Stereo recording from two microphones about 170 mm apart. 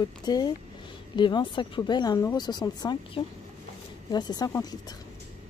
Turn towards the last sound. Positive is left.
turn(degrees=25)  # may be behind; listen again after turning